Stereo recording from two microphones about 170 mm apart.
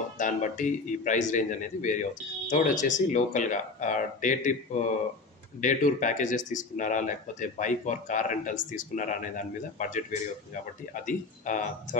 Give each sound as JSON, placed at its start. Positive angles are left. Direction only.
{"t": 0.2, "sound": "speech", "side_deg": 50}
{"t": 11.1, "sound": "speech", "side_deg": 50}